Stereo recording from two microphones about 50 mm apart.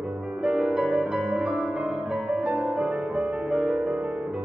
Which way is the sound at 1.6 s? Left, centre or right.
Centre.